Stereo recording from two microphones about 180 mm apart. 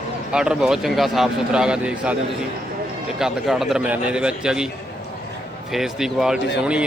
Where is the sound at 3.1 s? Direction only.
Centre (ahead or behind).